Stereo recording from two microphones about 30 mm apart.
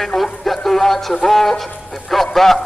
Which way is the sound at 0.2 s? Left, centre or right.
Centre.